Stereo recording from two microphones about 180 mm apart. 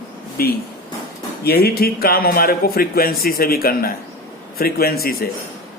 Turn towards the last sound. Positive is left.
turn(degrees=55)  # may be behind; listen again after turning